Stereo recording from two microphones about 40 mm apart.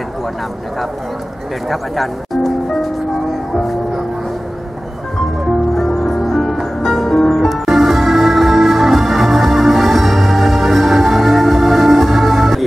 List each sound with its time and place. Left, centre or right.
1.7 s speech: centre
6.0 s music: centre